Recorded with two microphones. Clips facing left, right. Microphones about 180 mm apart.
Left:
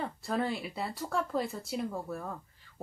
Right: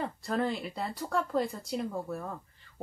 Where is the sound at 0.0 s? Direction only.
5° left (ahead or behind).